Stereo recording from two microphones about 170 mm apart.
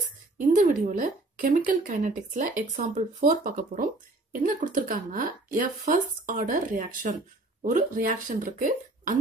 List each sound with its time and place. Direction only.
0.4 s a woman's voice: 50° right (ahead or behind)